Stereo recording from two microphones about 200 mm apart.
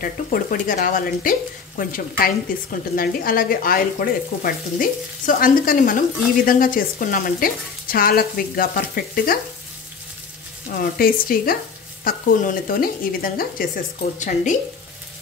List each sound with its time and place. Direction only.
0.0 s sizzle: 45° left (ahead or behind)
10.7 s sizzle: 45° left (ahead or behind)
14.2 s speech: 40° left (ahead or behind)